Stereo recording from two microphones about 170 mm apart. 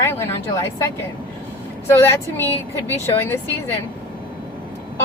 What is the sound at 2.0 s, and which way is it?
A woman's voice, 15° left (ahead or behind).